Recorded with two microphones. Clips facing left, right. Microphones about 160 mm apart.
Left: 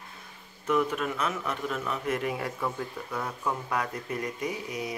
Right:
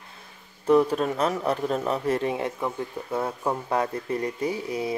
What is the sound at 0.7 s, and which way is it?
A man's voice, 35° right (ahead or behind).